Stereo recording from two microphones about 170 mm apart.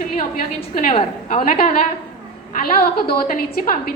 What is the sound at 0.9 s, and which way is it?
Speech, 35° left (ahead or behind).